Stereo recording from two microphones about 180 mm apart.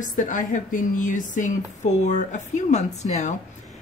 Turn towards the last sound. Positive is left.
turn(degrees=40)  # may be behind; listen again after turning